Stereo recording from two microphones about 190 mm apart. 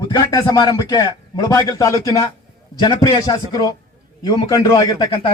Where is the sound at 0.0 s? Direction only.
20° left (ahead or behind).